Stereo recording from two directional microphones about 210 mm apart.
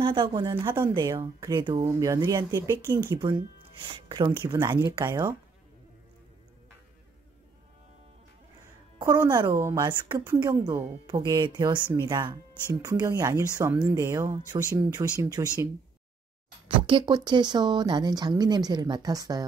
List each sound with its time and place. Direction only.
0.0 s speech: 25° right (ahead or behind)
8.9 s music: 20° right (ahead or behind)
9.3 s speech: 20° right (ahead or behind)
16.6 s speech: 25° right (ahead or behind)